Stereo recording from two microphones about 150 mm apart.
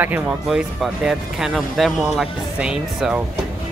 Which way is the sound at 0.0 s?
10° right (ahead or behind).